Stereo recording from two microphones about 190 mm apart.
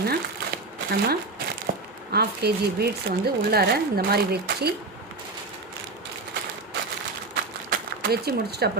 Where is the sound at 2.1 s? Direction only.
55° right (ahead or behind).